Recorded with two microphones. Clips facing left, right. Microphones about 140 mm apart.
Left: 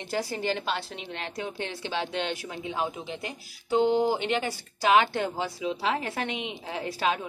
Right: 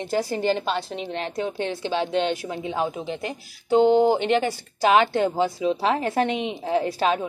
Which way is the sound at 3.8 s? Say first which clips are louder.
Right 6 dB; 60° right (ahead or behind).